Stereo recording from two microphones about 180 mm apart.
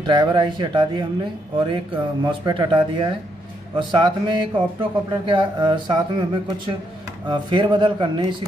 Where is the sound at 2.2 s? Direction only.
30° right (ahead or behind).